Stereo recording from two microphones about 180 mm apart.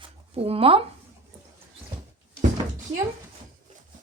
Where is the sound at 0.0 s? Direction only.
35° right (ahead or behind).